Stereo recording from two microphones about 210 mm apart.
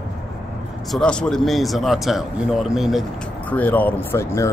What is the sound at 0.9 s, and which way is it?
A man's voice, 5° left (ahead or behind).